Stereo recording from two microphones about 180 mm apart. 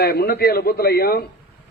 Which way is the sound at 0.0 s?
60° left (ahead or behind).